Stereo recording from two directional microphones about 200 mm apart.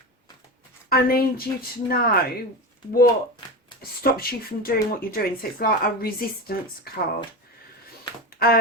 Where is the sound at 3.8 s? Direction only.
50° left (ahead or behind).